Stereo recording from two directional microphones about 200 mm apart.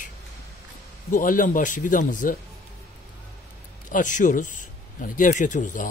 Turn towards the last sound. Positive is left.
turn(degrees=40)  # may be behind; listen again after turning